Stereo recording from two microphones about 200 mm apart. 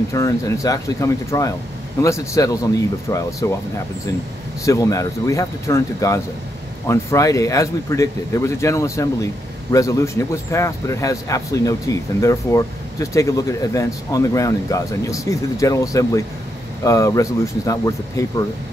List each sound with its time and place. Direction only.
0.1 s a man's voice: 15° left (ahead or behind)
4.6 s a man's voice: 15° left (ahead or behind)